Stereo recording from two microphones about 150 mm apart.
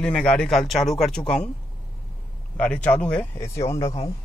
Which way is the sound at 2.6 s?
10° left (ahead or behind).